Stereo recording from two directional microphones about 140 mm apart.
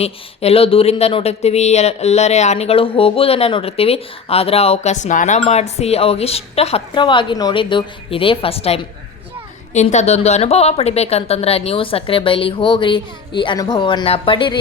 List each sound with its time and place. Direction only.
0.0 s speech: 45° left (ahead or behind)
6.9 s a woman's voice: 35° left (ahead or behind)